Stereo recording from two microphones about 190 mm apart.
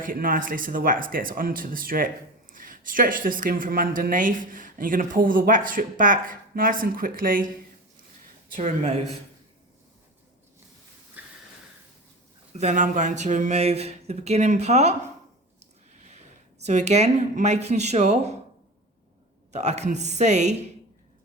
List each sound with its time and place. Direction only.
0.0 s speech: 45° right (ahead or behind)
8.5 s speech: 40° right (ahead or behind)
12.5 s speech: 40° right (ahead or behind)
16.6 s speech: 35° right (ahead or behind)
19.5 s speech: 35° right (ahead or behind)